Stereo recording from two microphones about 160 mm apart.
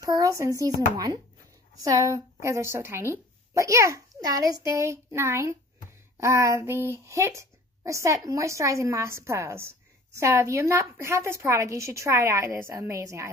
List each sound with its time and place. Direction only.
0.0 s a woman's voice: 20° right (ahead or behind)